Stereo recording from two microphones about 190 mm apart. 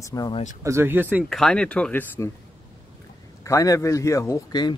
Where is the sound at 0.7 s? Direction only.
10° right (ahead or behind).